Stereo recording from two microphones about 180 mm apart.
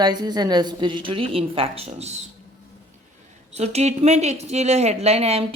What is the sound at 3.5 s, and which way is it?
A woman's voice, 35° right (ahead or behind).